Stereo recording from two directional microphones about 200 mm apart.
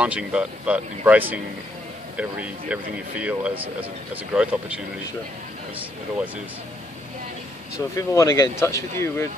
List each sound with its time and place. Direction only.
0.0 s speech: 5° right (ahead or behind)
7.9 s speech: 15° left (ahead or behind)